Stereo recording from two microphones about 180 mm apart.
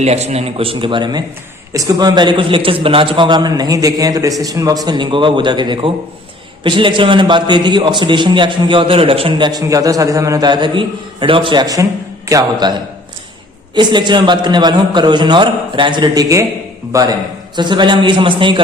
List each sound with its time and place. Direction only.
0.0 s a man's voice: 35° right (ahead or behind)